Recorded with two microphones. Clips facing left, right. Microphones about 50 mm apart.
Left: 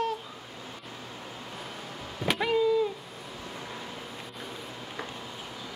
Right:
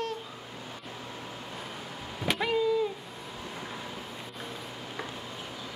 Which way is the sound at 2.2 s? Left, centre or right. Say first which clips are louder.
Left 2 dB; centre.